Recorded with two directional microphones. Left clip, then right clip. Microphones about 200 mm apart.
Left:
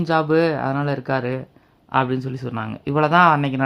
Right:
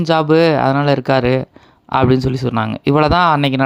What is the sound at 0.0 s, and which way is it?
Speech, 25° right (ahead or behind).